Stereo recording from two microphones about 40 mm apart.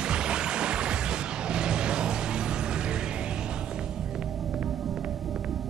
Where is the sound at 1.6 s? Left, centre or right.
Right.